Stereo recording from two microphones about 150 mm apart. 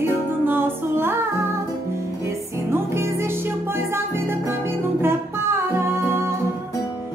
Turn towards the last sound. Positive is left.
turn(degrees=-15)  # may be behind; listen again after turning